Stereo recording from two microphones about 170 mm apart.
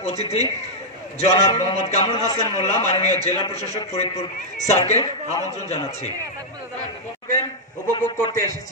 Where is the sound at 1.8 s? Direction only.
40° left (ahead or behind).